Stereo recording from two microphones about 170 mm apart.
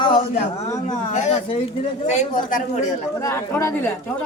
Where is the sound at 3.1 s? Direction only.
15° left (ahead or behind).